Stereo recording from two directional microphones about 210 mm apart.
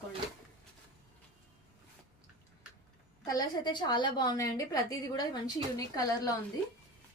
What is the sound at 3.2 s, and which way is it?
A woman's voice, 20° left (ahead or behind).